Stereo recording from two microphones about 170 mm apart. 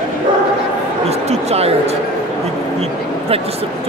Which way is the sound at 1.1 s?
40° right (ahead or behind).